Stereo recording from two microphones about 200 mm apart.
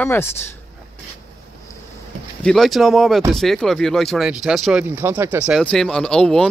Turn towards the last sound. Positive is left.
turn(degrees=5)  # may be behind; listen again after turning